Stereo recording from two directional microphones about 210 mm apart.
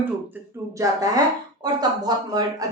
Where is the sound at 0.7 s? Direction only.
15° right (ahead or behind).